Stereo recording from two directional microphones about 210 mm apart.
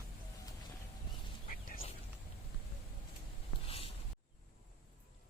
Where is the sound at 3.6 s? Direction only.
25° left (ahead or behind).